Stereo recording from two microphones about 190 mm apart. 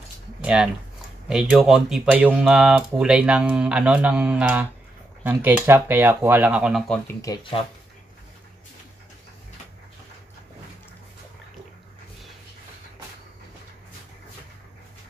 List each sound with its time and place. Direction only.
0.4 s a sound: 5° right (ahead or behind)
1.3 s speech: 5° right (ahead or behind)
7.2 s speech: 20° left (ahead or behind)